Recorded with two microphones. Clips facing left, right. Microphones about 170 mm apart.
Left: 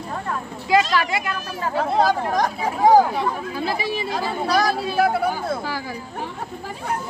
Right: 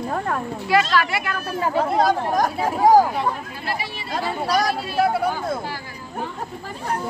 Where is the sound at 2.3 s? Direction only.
Centre (ahead or behind).